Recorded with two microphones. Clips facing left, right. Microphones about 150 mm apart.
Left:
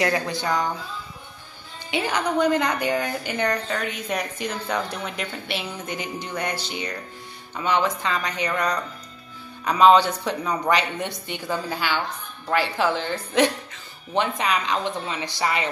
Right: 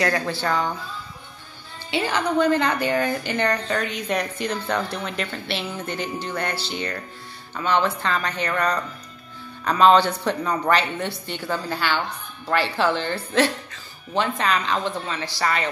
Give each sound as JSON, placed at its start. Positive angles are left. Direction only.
{"t": 0.0, "sound": "a woman's voice", "side_deg": 20}
{"t": 1.9, "sound": "a woman's voice", "side_deg": 15}